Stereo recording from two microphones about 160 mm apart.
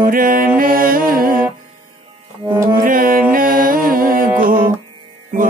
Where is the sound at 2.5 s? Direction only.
25° right (ahead or behind).